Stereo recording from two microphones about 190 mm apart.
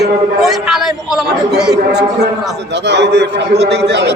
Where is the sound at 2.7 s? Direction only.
65° right (ahead or behind).